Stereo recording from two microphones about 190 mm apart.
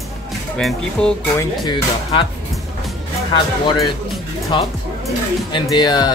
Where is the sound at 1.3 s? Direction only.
25° left (ahead or behind).